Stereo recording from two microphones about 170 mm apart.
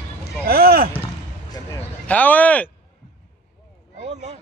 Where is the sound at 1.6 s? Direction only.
20° left (ahead or behind).